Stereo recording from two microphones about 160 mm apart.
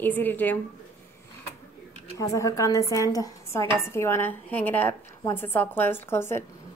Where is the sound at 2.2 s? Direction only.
20° left (ahead or behind).